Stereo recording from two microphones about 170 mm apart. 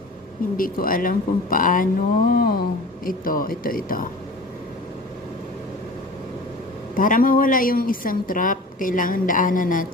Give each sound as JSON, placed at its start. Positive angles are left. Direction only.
{"t": 0.5, "sound": "speech", "side_deg": 55}
{"t": 6.9, "sound": "a woman's voice", "side_deg": 55}